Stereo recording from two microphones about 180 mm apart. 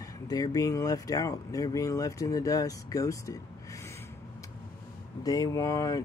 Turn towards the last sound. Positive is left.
turn(degrees=15)  # may be behind; listen again after turning